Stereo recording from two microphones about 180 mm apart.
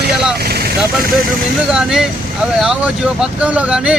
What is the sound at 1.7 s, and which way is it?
Speech, 5° right (ahead or behind).